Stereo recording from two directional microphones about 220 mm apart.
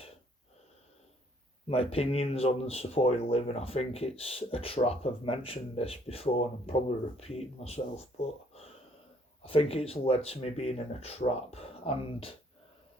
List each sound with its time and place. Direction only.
1.6 s speech: 25° left (ahead or behind)